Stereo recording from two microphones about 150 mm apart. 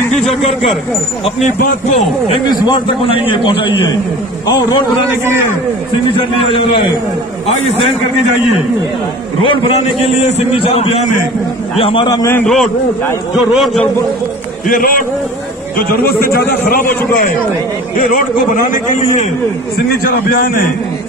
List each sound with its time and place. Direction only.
1.6 s speech: 50° left (ahead or behind)
2.5 s a man's voice: 25° left (ahead or behind)
4.5 s a man's voice: 25° left (ahead or behind)
9.4 s a man's voice: 35° left (ahead or behind)
12.4 s a man's voice: 5° left (ahead or behind)
14.7 s a man's voice: 70° left (ahead or behind)
16.2 s a man's voice: 85° left
17.9 s a man's voice: 65° left (ahead or behind)
20.0 s a man's voice: 80° left